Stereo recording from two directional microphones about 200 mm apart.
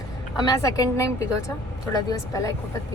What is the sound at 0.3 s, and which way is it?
A woman's voice, 20° left (ahead or behind).